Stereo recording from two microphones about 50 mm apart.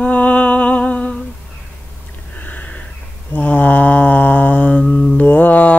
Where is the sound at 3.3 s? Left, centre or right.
Left.